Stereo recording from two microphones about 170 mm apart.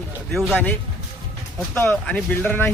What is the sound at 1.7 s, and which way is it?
Speech, 10° left (ahead or behind).